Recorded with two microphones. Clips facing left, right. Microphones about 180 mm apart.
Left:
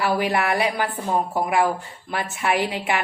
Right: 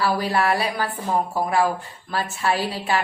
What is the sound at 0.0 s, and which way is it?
A woman's voice, 20° left (ahead or behind).